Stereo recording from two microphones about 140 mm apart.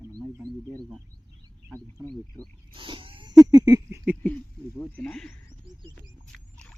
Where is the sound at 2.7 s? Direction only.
35° right (ahead or behind).